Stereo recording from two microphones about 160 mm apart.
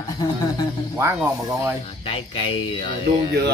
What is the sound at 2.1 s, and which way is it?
Speech, 35° left (ahead or behind).